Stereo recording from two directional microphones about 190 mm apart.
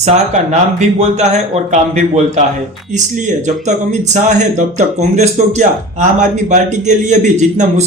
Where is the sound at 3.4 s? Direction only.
40° right (ahead or behind).